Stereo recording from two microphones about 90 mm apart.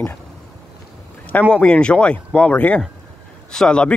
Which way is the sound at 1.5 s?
10° left (ahead or behind).